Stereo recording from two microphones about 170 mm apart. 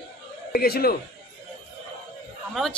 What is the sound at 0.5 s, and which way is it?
Speech, 65° left (ahead or behind).